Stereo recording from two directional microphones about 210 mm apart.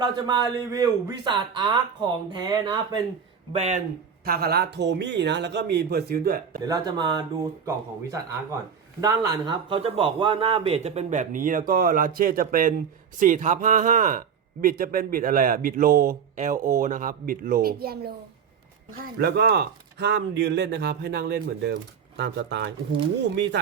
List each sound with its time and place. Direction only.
0.0 s a man's voice: 20° right (ahead or behind)
3.5 s speech: 30° right (ahead or behind)
4.3 s speech: 50° right (ahead or behind)
6.7 s a man's voice: 20° right (ahead or behind)
9.0 s speech: 20° right (ahead or behind); by 18.1 s 45° right (ahead or behind)
19.2 s speech: 50° right (ahead or behind)